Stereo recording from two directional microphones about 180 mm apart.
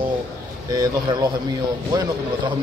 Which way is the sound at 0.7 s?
20° right (ahead or behind).